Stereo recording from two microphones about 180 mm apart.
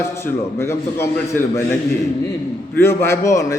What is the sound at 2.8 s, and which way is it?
Speech, 15° left (ahead or behind).